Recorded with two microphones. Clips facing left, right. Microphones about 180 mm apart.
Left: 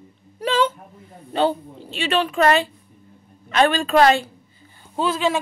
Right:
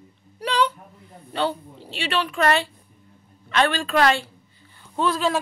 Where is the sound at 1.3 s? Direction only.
45° left (ahead or behind).